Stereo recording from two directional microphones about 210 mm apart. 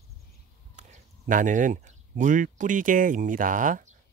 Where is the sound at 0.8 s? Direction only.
35° right (ahead or behind).